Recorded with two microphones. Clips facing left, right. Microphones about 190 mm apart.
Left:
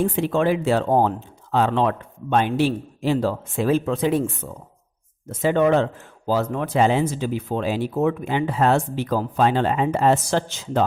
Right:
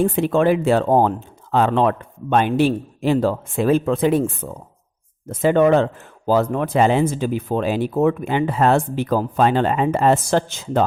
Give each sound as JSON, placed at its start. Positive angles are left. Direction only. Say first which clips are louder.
{"t": 0.0, "sound": "speech", "louder": "right 3 dB", "side_deg": -55}